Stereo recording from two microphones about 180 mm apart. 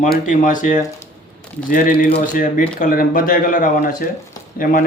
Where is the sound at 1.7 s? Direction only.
55° left (ahead or behind).